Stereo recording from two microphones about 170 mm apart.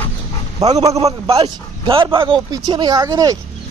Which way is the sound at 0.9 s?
35° right (ahead or behind).